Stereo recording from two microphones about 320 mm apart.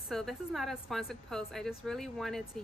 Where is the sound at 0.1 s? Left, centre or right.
Centre.